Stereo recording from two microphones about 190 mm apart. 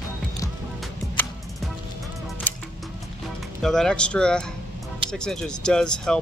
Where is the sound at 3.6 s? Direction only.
5° left (ahead or behind).